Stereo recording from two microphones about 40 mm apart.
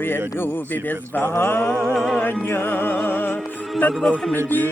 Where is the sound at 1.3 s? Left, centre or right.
Left.